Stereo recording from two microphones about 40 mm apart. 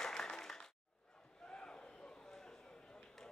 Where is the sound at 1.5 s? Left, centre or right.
Left.